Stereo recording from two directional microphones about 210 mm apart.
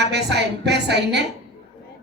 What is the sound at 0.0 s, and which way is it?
A man's voice, 55° right (ahead or behind).